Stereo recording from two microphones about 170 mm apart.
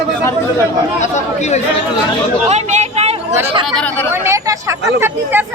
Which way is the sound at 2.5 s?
40° right (ahead or behind).